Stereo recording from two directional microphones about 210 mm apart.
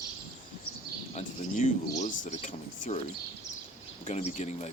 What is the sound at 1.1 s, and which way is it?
Speech, 35° left (ahead or behind).